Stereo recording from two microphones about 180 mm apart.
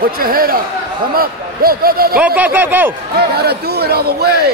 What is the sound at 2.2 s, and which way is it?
Speech, 10° right (ahead or behind).